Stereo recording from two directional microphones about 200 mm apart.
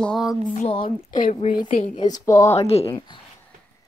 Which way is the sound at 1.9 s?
20° left (ahead or behind).